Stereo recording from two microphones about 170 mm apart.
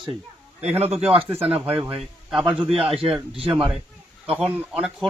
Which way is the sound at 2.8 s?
35° right (ahead or behind).